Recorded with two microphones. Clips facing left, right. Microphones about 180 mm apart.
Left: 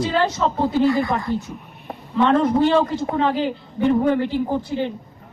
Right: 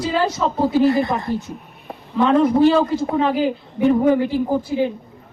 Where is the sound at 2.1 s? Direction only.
Centre (ahead or behind).